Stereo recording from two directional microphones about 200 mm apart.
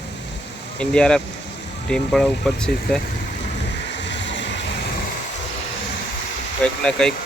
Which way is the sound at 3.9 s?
65° left (ahead or behind).